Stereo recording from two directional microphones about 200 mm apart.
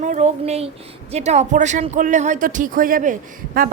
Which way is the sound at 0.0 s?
35° right (ahead or behind).